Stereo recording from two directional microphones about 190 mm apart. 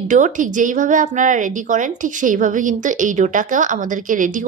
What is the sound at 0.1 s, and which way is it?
A woman's voice, 40° right (ahead or behind).